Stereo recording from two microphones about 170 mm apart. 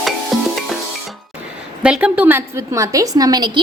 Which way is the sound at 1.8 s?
5° right (ahead or behind).